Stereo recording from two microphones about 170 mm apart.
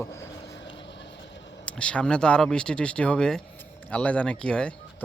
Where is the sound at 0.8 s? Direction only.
90° left.